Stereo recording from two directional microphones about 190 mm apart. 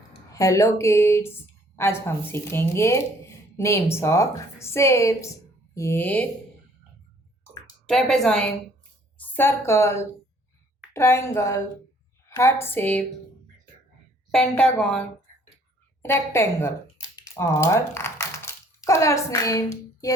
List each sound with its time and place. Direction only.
0.3 s speech: 15° left (ahead or behind)
7.9 s a woman's voice: centre (ahead or behind)
14.3 s a woman's voice: 5° left (ahead or behind)
16.0 s speech: 15° left (ahead or behind)
17.2 s a sound: 15° left (ahead or behind)